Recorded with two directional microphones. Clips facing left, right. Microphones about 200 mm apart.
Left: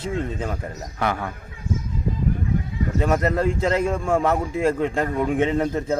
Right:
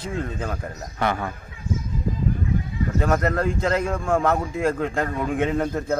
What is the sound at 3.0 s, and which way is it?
A man's voice, 5° left (ahead or behind).